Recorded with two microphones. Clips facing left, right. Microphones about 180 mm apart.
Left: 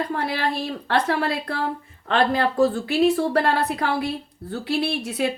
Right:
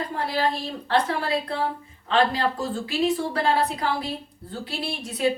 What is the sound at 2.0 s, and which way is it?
A woman's voice, 60° left (ahead or behind).